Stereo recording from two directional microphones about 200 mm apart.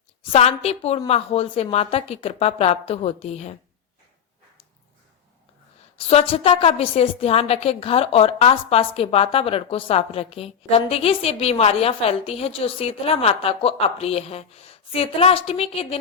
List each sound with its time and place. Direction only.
0.2 s a woman's voice: 30° left (ahead or behind)
6.1 s a woman's voice: 30° left (ahead or behind)